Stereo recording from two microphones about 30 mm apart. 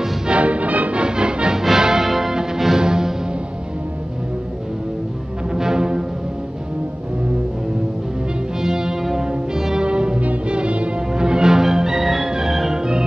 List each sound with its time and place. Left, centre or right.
0.3 s music: right
0.9 s music: right
1.6 s music: centre
2.8 s music: right
5.5 s music: centre
8.5 s brass instrument: right
9.8 s music: right
11.1 s music: right
12.7 s organ: right